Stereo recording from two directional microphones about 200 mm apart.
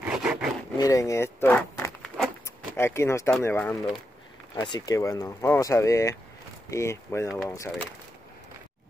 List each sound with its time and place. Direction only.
0.0 s wood: 5° right (ahead or behind)
0.7 s speech: 15° left (ahead or behind)
4.6 s speech: 20° left (ahead or behind)